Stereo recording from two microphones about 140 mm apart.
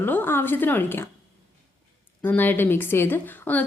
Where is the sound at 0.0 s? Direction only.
15° left (ahead or behind).